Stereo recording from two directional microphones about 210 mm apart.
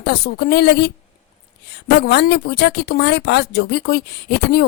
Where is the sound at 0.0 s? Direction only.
50° left (ahead or behind).